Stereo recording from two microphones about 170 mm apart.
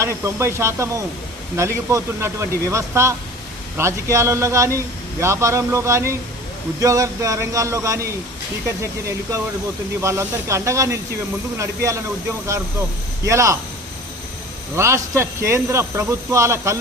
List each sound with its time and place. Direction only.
0.0 s speech: 15° right (ahead or behind)
13.2 s speech: 15° right (ahead or behind)
14.8 s speech: 15° right (ahead or behind)